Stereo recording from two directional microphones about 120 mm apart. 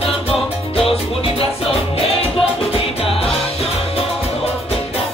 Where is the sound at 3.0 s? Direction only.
50° left (ahead or behind).